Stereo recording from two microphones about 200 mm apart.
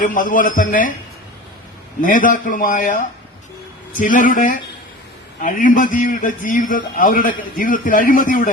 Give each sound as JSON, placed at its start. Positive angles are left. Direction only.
{"t": 0.0, "sound": "a man's voice", "side_deg": 40}
{"t": 2.0, "sound": "a man's voice", "side_deg": 40}
{"t": 4.0, "sound": "a man's voice", "side_deg": 40}